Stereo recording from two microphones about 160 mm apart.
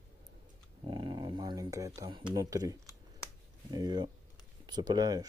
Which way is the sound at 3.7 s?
25° right (ahead or behind).